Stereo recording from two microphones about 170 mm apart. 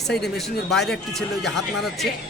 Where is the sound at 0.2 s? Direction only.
Centre (ahead or behind).